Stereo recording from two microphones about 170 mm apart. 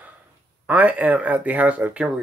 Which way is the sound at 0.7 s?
10° right (ahead or behind).